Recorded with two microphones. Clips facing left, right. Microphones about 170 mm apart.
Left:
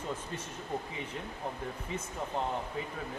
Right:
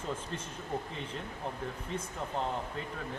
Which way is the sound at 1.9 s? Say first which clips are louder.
Right 1 dB; 5° left (ahead or behind).